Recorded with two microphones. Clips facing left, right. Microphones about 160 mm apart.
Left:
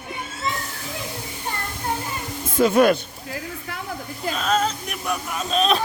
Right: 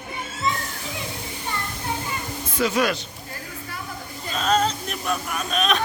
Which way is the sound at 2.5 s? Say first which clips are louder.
Left 6 dB; 50° left (ahead or behind).